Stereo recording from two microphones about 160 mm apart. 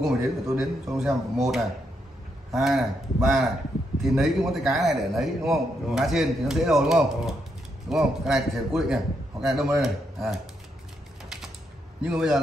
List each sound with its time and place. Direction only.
0.0 s a man's voice: centre (ahead or behind)
12.0 s a man's voice: 5° right (ahead or behind)